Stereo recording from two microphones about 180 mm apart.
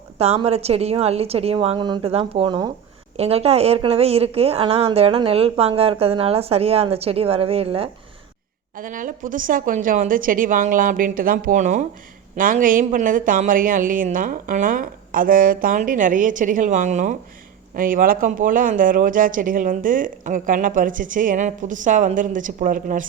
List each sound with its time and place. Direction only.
0.2 s a woman's voice: 35° right (ahead or behind)
8.7 s speech: 50° right (ahead or behind)